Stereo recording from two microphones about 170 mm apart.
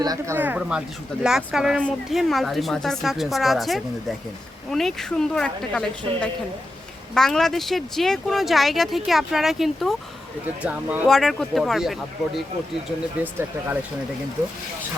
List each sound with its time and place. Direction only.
0.0 s speech: 20° right (ahead or behind)
0.3 s speech: 10° right (ahead or behind)